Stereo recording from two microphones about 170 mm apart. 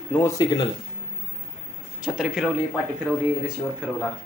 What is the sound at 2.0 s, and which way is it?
Speech, 5° right (ahead or behind).